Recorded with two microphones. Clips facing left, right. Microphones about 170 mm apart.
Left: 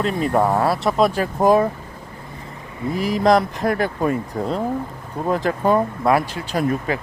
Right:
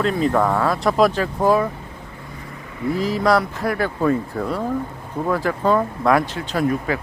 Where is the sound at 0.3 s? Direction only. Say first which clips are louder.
Left 4 dB; 25° left (ahead or behind).